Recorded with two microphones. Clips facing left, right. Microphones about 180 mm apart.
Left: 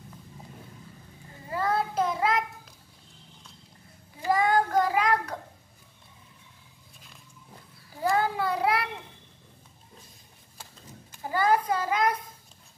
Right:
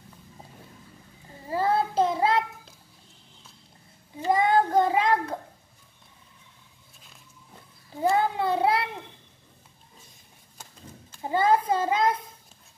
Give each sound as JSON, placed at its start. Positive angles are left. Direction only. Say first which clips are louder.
{"t": 1.5, "sound": "child singing", "louder": "right 3 dB", "side_deg": -30}
{"t": 4.3, "sound": "child singing", "louder": "right 2 dB", "side_deg": -25}
{"t": 8.0, "sound": "child singing", "louder": "right 2 dB", "side_deg": -20}
{"t": 11.2, "sound": "a sound", "louder": "right 2 dB", "side_deg": -25}